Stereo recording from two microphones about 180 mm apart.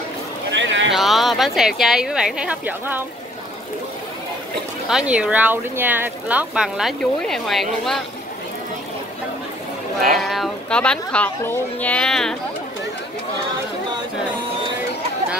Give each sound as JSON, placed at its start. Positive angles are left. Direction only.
{"t": 0.5, "sound": "a sound", "side_deg": -90}
{"t": 0.9, "sound": "speech", "side_deg": 0}
{"t": 4.8, "sound": "speech", "side_deg": -5}
{"t": 10.1, "sound": "speech", "side_deg": 0}